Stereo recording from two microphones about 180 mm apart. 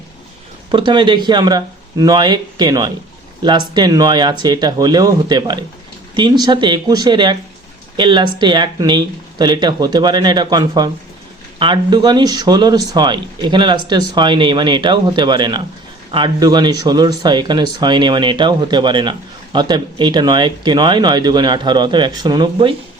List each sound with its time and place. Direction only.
0.7 s speech: 25° right (ahead or behind)